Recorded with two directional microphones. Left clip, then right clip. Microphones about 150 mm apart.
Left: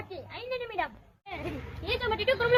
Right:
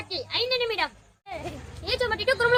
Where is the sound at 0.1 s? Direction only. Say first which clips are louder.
Right 11 dB; 45° right (ahead or behind).